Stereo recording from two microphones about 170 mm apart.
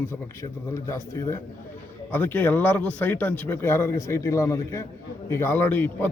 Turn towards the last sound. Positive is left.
turn(degrees=10)  # may be behind; listen again after turning